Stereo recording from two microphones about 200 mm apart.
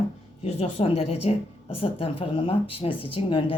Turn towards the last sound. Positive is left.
turn(degrees=25)  # may be behind; listen again after turning